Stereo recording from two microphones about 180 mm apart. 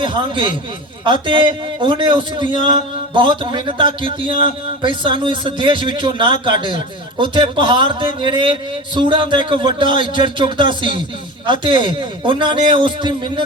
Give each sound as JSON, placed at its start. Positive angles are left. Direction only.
{"t": 0.0, "sound": "a man's voice", "side_deg": -25}